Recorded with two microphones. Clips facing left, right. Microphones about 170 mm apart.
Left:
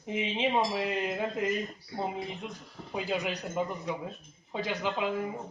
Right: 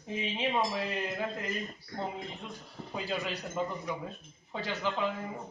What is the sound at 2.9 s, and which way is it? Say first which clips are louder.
A man's voice: left 3 dB; 15° left (ahead or behind).